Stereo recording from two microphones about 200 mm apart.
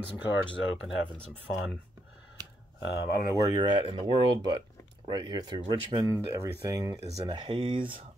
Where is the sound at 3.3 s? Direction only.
20° right (ahead or behind).